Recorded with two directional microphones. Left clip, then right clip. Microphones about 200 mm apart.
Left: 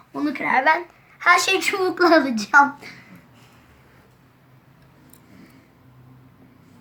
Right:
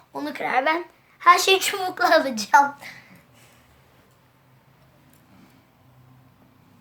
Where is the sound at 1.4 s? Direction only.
40° right (ahead or behind).